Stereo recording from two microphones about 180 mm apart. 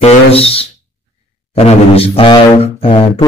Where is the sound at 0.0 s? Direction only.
35° left (ahead or behind).